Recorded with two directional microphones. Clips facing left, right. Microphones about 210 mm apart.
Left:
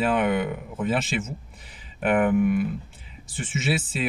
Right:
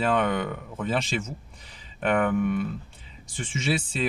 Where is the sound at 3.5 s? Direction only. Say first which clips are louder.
Left 1 dB; 5° left (ahead or behind).